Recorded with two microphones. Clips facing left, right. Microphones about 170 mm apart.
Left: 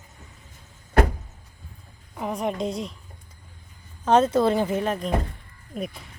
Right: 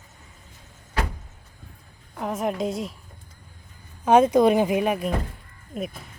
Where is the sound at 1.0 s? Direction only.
50° left (ahead or behind).